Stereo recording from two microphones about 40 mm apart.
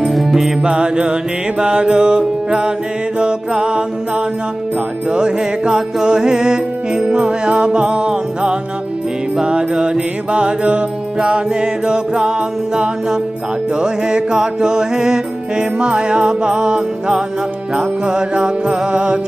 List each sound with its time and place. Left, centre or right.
0.1 s music: centre
0.6 s music: right
5.1 s music: right